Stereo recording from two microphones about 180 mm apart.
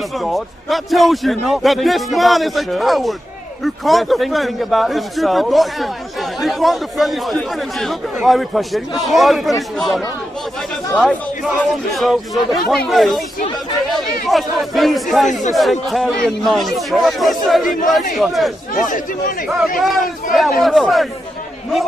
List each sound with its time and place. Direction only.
0.2 s a man's voice: centre (ahead or behind)
18.8 s speech: 45° left (ahead or behind)
19.8 s a man's voice: centre (ahead or behind)